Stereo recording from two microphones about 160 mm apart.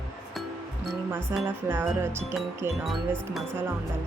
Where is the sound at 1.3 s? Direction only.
15° right (ahead or behind).